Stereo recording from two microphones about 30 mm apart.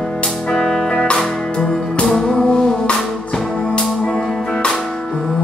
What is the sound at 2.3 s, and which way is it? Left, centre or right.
Music, left.